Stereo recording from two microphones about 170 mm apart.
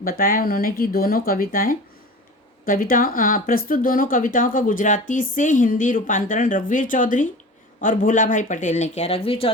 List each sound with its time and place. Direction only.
0.0 s speech: 55° left (ahead or behind); by 9.5 s 35° left (ahead or behind)